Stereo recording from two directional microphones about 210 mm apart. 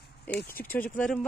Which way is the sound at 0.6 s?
10° left (ahead or behind).